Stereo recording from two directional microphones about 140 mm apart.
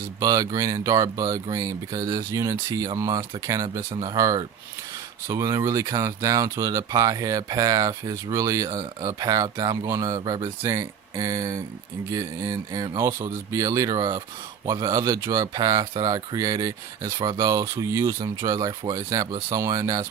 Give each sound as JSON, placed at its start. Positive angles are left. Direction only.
{"t": 0.2, "sound": "speech", "side_deg": -25}